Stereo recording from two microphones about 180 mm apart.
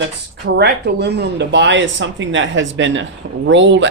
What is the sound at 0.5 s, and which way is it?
Speech, 65° right (ahead or behind).